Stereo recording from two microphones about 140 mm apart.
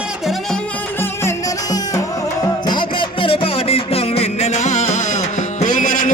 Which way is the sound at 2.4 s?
30° left (ahead or behind).